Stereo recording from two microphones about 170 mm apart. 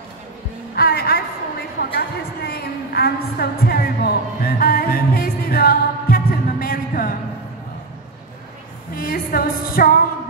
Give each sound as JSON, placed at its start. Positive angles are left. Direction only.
{"t": 0.7, "sound": "music", "side_deg": 65}
{"t": 1.8, "sound": "a sound", "side_deg": 65}
{"t": 8.9, "sound": "music", "side_deg": 60}